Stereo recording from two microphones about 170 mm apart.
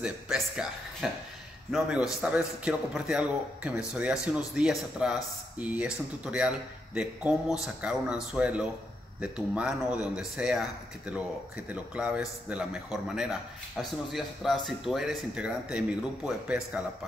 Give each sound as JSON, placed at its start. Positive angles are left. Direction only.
{"t": 0.0, "sound": "a man's voice", "side_deg": -5}